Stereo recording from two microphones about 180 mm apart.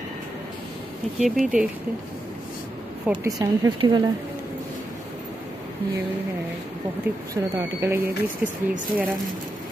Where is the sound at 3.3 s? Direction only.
25° right (ahead or behind).